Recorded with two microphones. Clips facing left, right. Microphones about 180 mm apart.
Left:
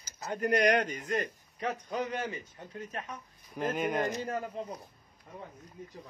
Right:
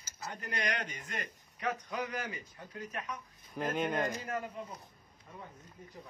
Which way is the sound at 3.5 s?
5° left (ahead or behind).